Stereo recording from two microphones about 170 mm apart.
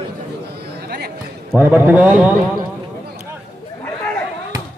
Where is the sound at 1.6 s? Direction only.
10° right (ahead or behind).